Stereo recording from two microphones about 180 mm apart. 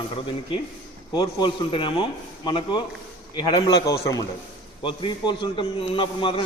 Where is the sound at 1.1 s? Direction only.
25° left (ahead or behind).